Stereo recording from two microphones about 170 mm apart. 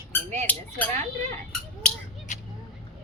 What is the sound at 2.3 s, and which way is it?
Vehicle, 45° left (ahead or behind).